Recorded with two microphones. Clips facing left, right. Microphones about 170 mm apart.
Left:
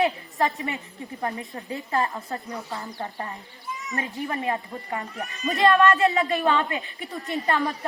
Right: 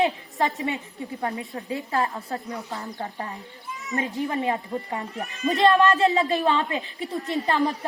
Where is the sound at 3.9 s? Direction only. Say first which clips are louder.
Right 4 dB; 20° right (ahead or behind).